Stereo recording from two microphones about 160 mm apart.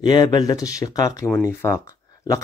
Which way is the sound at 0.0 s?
25° left (ahead or behind).